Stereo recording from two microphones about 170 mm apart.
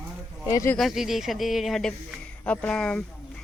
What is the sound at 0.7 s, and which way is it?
Speech, centre (ahead or behind).